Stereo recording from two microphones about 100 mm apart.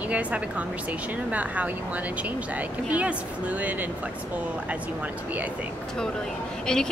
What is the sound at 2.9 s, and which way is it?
Speech, 15° right (ahead or behind).